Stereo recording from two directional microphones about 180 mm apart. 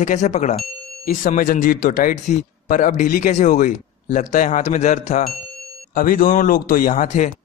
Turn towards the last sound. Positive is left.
turn(degrees=45)  # may be behind; listen again after turning